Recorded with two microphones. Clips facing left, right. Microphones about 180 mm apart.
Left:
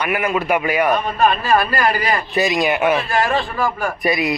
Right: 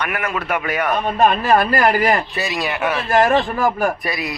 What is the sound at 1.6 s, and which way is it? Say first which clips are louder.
Speech: right 3 dB; 45° right (ahead or behind).